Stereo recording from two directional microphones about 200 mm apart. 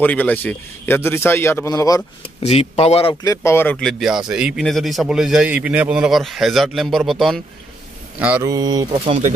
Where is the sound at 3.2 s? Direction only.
15° left (ahead or behind); by 7.4 s centre (ahead or behind).